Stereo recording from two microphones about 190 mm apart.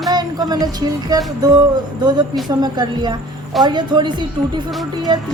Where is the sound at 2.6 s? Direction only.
20° right (ahead or behind).